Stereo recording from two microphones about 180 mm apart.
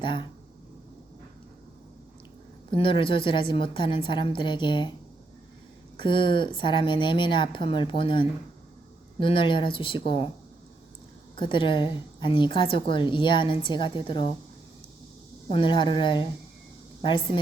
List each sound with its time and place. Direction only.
0.0 s a woman's voice: 25° left (ahead or behind)
2.7 s a woman's voice: 30° left (ahead or behind)
6.0 s a woman's voice: 25° left (ahead or behind)
11.3 s a woman's voice: 25° left (ahead or behind)
15.4 s a woman's voice: 30° left (ahead or behind)